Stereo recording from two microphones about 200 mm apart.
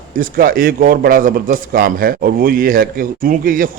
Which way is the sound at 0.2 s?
45° right (ahead or behind).